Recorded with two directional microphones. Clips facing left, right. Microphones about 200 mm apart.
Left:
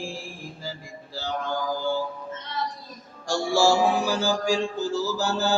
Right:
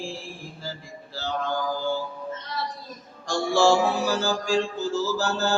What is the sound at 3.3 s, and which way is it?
Music, 10° left (ahead or behind).